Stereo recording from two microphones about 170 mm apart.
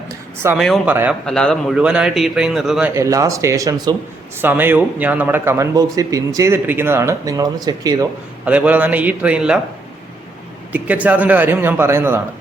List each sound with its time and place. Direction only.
0.6 s a man's voice: centre (ahead or behind)
2.9 s a man's voice: 20° right (ahead or behind)
8.4 s a man's voice: 10° right (ahead or behind)
10.7 s a man's voice: 10° right (ahead or behind)